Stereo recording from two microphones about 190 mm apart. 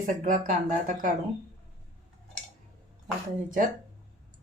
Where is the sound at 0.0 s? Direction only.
45° right (ahead or behind).